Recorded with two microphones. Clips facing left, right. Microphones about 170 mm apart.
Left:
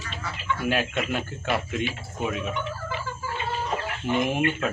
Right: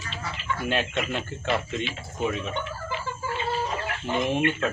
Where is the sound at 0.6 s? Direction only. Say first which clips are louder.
Left 1 dB; 5° left (ahead or behind).